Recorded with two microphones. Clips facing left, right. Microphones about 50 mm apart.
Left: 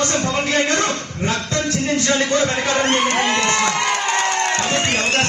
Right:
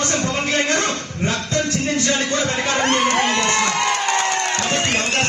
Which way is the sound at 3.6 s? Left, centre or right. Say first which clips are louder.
Even; left.